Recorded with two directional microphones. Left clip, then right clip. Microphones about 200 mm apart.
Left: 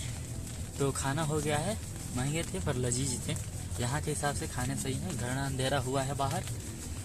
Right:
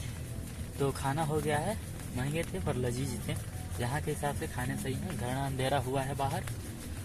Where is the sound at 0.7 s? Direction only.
10° left (ahead or behind).